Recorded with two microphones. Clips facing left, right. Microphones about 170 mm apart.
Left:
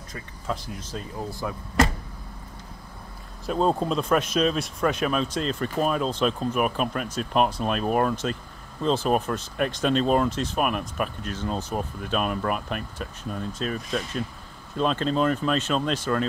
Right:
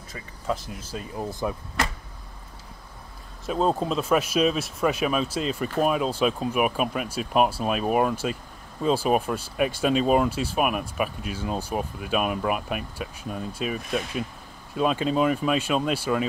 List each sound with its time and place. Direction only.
0.1 s speech: 5° right (ahead or behind)
1.4 s speech: 20° right (ahead or behind)
3.4 s speech: centre (ahead or behind)